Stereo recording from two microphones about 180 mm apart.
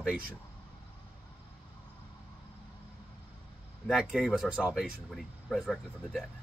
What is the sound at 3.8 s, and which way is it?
Speech, centre (ahead or behind).